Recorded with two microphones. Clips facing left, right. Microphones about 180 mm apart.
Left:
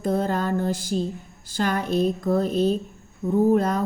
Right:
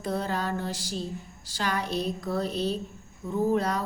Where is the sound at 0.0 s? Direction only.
45° left (ahead or behind).